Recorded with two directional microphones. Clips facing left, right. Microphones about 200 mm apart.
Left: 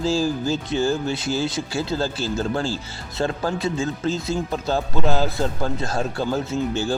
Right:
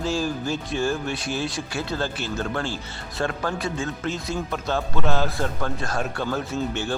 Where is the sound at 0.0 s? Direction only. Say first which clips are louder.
Left 4 dB; 30° left (ahead or behind).